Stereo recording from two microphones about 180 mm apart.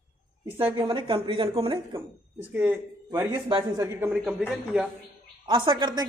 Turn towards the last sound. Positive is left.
turn(degrees=-25)  # may be behind; listen again after turning